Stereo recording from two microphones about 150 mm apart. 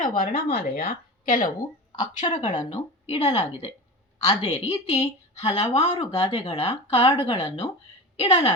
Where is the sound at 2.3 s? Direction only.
55° left (ahead or behind).